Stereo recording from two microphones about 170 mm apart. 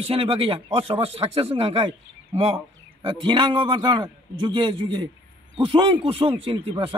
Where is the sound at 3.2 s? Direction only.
30° right (ahead or behind).